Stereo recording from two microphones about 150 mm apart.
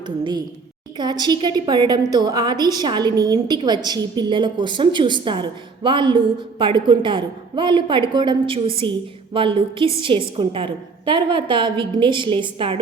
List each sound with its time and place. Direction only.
0.9 s a woman's voice: 30° right (ahead or behind)